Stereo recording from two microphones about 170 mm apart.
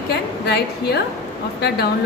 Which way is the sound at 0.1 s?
75° left (ahead or behind).